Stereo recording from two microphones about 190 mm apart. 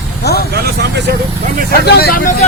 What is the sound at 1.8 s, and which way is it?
Speech, 55° left (ahead or behind).